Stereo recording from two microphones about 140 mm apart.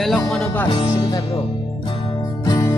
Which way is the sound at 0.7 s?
40° left (ahead or behind).